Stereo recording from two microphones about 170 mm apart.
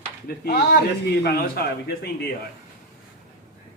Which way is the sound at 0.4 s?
70° left (ahead or behind).